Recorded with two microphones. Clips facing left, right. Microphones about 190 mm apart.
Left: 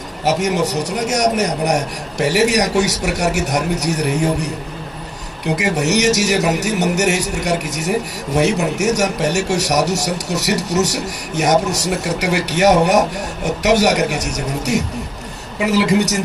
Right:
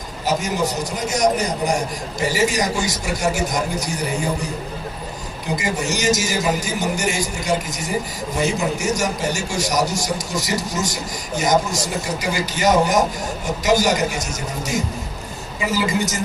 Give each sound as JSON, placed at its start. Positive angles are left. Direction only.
{"t": 0.2, "sound": "a man's voice", "side_deg": 70}
{"t": 5.6, "sound": "a man's voice", "side_deg": 70}